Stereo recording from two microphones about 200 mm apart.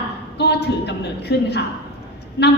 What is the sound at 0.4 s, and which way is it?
A woman's voice, 55° left (ahead or behind).